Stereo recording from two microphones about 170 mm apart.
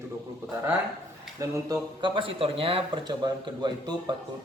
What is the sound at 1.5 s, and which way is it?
Speech, 25° right (ahead or behind).